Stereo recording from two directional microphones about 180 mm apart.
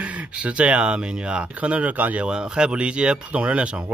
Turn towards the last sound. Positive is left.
turn(degrees=-5)  # may be behind; listen again after turning